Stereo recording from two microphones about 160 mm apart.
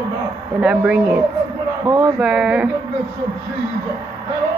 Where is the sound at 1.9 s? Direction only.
20° right (ahead or behind).